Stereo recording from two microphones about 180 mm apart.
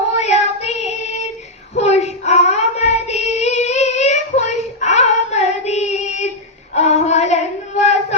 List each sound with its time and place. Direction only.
0.1 s child singing: 40° left (ahead or behind)
6.7 s female singing: 40° left (ahead or behind)